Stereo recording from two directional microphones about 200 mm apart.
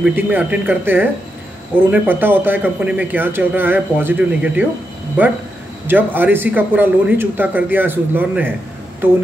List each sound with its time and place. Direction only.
0.0 s a man's voice: 10° right (ahead or behind)
5.9 s a man's voice: 10° right (ahead or behind)